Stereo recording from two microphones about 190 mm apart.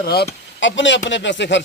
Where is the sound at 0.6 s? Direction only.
75° left (ahead or behind).